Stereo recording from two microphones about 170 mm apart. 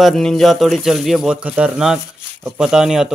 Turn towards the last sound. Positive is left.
turn(degrees=-5)  # may be behind; listen again after turning